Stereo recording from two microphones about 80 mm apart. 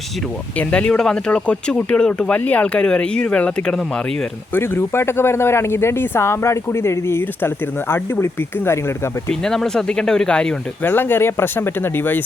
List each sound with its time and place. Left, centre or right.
0.5 s speech: centre
4.5 s speech: left
9.3 s speech: centre
10.8 s speech: left